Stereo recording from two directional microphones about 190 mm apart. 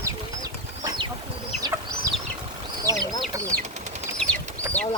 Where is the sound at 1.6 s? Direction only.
15° right (ahead or behind).